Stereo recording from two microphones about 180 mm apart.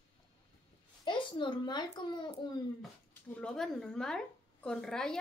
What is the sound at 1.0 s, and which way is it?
A child's voice, 25° left (ahead or behind).